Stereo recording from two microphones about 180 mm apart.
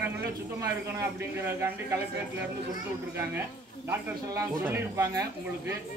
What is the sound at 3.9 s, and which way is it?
Speech, 10° right (ahead or behind).